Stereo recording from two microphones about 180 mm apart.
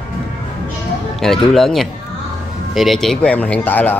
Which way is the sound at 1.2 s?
Centre (ahead or behind).